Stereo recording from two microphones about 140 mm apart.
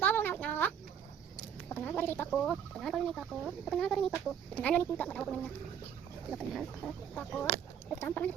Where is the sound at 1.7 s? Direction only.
15° left (ahead or behind).